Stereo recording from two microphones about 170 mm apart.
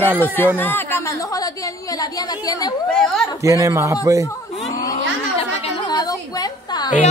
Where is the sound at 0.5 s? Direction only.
10° left (ahead or behind).